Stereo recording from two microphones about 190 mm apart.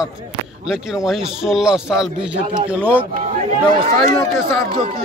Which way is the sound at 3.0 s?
35° right (ahead or behind).